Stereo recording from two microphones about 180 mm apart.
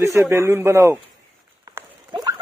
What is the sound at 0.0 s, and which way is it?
Speech, 15° right (ahead or behind).